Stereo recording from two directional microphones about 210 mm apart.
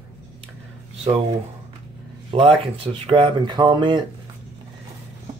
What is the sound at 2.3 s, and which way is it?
Speech, 25° right (ahead or behind).